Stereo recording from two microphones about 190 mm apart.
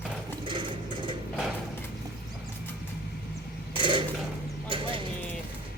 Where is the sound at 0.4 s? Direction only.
25° right (ahead or behind).